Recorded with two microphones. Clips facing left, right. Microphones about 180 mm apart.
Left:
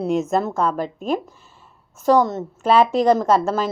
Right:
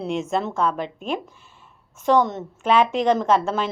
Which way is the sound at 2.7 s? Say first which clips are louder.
Left 3 dB; 35° left (ahead or behind).